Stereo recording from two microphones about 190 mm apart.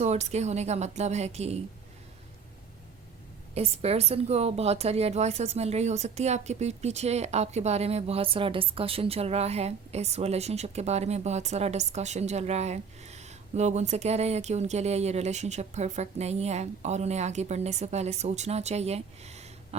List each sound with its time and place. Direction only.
0.0 s a woman's voice: 35° right (ahead or behind)
3.5 s a woman's voice: 35° right (ahead or behind)